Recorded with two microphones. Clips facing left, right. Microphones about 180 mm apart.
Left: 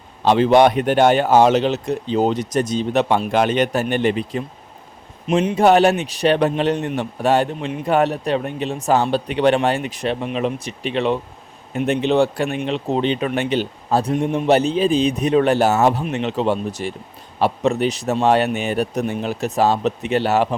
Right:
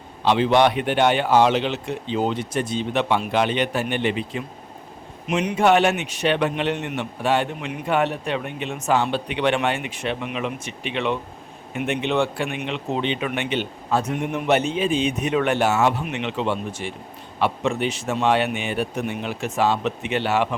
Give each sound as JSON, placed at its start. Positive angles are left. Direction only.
{"t": 0.3, "sound": "a man's voice", "side_deg": 40}